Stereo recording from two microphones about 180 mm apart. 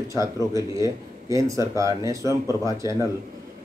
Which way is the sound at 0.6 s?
20° left (ahead or behind).